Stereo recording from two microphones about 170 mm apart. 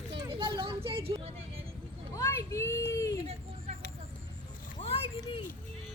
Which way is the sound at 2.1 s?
15° left (ahead or behind).